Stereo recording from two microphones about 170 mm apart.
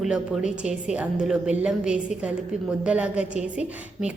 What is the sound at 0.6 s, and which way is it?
A woman's voice, 5° right (ahead or behind).